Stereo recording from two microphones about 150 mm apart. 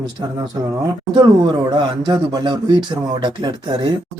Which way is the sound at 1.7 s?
30° right (ahead or behind).